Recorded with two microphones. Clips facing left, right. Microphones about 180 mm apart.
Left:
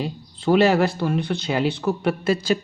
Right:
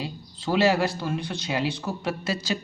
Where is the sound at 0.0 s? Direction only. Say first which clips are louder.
Left 7 dB; 55° left (ahead or behind).